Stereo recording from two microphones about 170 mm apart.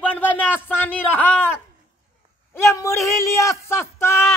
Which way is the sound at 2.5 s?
15° left (ahead or behind).